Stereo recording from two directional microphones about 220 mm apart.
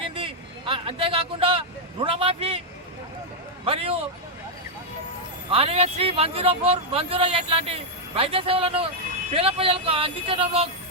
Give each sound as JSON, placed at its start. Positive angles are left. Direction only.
{"t": 0.0, "sound": "vehicle", "side_deg": -25}
{"t": 3.7, "sound": "a sound", "side_deg": -25}
{"t": 5.5, "sound": "a man's voice", "side_deg": -25}